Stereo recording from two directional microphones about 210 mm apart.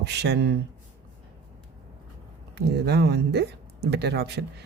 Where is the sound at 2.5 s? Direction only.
50° right (ahead or behind).